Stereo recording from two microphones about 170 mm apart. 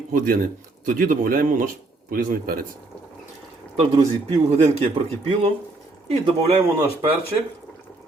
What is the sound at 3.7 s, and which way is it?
Speech, 35° right (ahead or behind).